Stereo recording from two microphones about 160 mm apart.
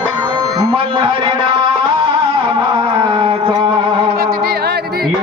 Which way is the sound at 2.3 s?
30° right (ahead or behind).